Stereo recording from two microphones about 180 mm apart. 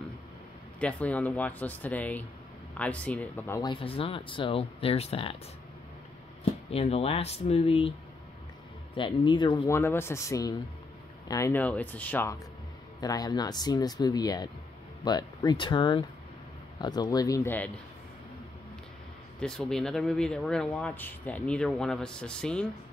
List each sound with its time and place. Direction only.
0.7 s speech: 5° left (ahead or behind)
3.6 s speech: 30° left (ahead or behind)
6.7 s speech: 35° left (ahead or behind)
8.9 s speech: 25° left (ahead or behind)
9.8 s speech: 15° left (ahead or behind)
13.0 s speech: 20° left (ahead or behind)
19.4 s speech: 5° left (ahead or behind)